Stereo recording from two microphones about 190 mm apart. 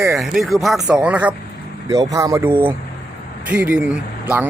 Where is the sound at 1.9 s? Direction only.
20° right (ahead or behind).